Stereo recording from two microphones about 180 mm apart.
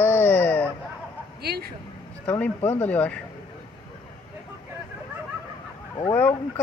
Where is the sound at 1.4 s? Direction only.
60° right (ahead or behind).